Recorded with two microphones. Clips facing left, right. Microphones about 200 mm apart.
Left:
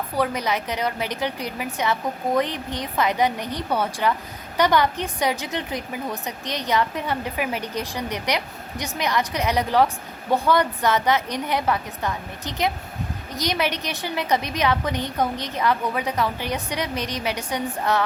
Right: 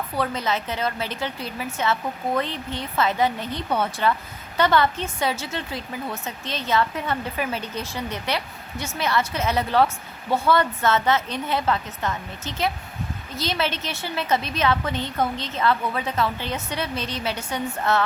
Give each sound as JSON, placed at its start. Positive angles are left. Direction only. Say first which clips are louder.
{"t": 0.2, "sound": "a woman's voice", "louder": "left 2 dB", "side_deg": 15}